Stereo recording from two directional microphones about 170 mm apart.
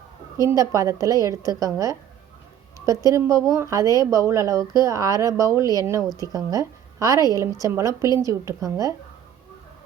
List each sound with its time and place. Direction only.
0.3 s speech: 20° right (ahead or behind)
2.8 s a woman's voice: 20° right (ahead or behind)